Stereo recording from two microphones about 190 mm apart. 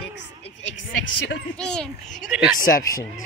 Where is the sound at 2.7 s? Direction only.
15° left (ahead or behind).